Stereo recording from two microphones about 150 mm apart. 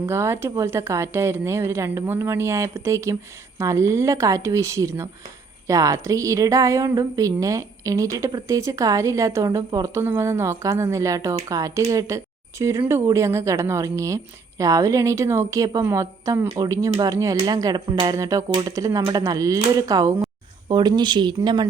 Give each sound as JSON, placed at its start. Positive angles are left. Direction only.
{"t": 0.0, "sound": "a woman's voice", "side_deg": -15}